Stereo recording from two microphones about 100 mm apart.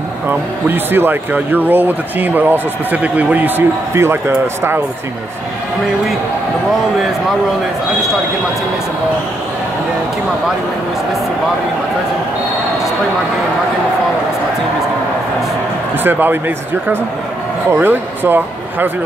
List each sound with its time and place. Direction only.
0.3 s speech: 20° right (ahead or behind)
16.0 s speech: 20° right (ahead or behind)